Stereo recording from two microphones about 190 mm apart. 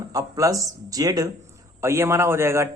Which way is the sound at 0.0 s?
20° right (ahead or behind).